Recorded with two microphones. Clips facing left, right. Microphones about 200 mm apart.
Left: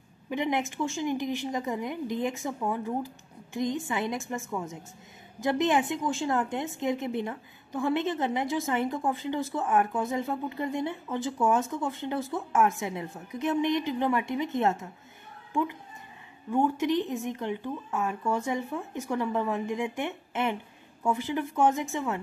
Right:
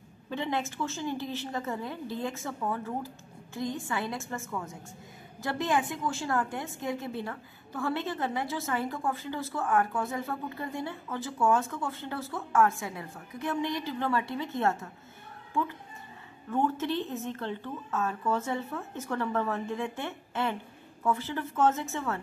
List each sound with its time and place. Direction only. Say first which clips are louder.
0.3 s a woman's voice: left 3 dB; 15° left (ahead or behind)
16.4 s a woman's voice: left 3 dB; 15° left (ahead or behind)